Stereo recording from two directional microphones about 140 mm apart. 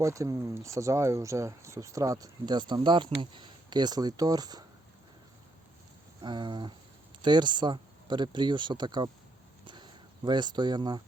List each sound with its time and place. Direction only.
0.0 s speech: 25° right (ahead or behind)
6.2 s speech: 35° right (ahead or behind)